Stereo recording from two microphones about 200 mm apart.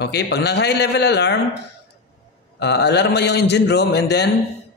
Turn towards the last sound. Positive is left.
turn(degrees=55)  # may be behind; listen again after turning